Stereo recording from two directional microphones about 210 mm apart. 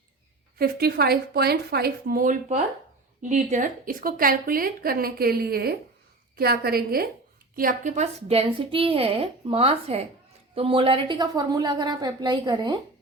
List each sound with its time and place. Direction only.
0.6 s a woman's voice: 45° right (ahead or behind); by 12.8 s 20° right (ahead or behind)